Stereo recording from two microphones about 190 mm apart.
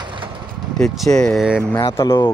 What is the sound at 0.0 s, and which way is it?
Vehicle, 25° right (ahead or behind).